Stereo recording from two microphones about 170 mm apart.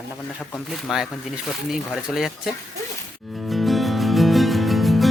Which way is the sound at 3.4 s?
Centre (ahead or behind).